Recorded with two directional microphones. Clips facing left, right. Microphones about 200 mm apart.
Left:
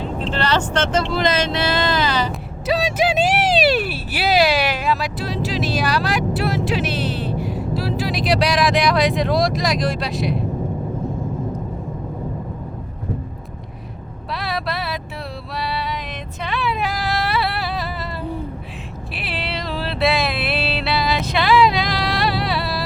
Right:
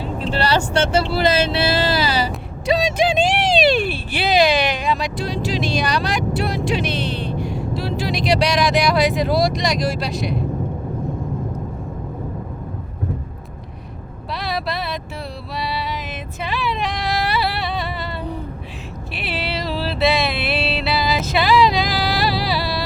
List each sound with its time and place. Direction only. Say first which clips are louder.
0.0 s speech: right 1 dB; 10° right (ahead or behind)
1.5 s speech: right 1 dB; 30° right (ahead or behind)
1.9 s speech: even; 10° right (ahead or behind)
2.6 s speech: right 1 dB; 5° left (ahead or behind)
14.3 s vehicle: right 1 dB; centre (ahead or behind)
15.5 s music: even; centre (ahead or behind)
16.4 s a sound: even; centre (ahead or behind)
19.1 s music: right 2 dB; centre (ahead or behind)